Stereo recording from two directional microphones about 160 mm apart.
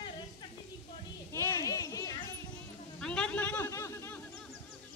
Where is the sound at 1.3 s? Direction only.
20° left (ahead or behind).